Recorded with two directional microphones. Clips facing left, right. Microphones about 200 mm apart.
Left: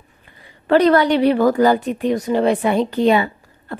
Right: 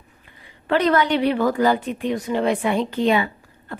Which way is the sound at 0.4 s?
40° left (ahead or behind).